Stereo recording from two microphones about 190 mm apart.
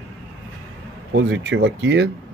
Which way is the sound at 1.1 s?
75° right (ahead or behind).